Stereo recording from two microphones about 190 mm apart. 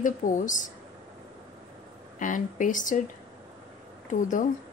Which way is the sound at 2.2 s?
45° left (ahead or behind).